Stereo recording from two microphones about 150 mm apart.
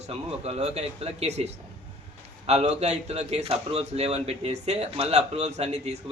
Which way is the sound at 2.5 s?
45° right (ahead or behind).